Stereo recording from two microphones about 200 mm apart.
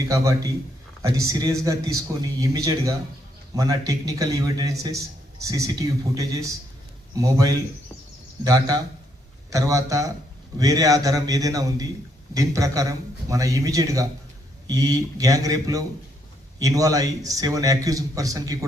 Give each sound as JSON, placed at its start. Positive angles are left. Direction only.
{"t": 0.1, "sound": "a man's voice", "side_deg": -15}